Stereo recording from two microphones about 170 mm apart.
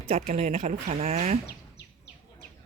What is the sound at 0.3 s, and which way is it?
Speech, 40° right (ahead or behind).